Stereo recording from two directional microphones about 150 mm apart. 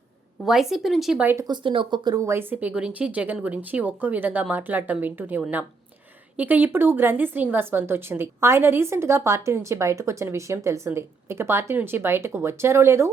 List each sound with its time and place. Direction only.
0.4 s speech: centre (ahead or behind)
1.5 s a woman's voice: 35° right (ahead or behind); by 13.1 s 15° right (ahead or behind)